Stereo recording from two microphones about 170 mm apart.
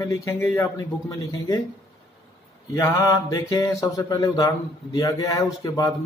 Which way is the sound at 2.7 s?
15° left (ahead or behind).